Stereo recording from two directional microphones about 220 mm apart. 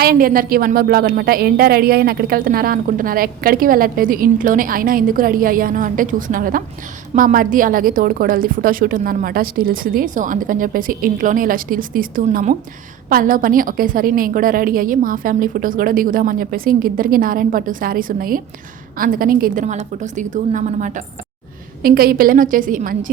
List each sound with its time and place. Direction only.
0.0 s a woman's voice: 40° right (ahead or behind)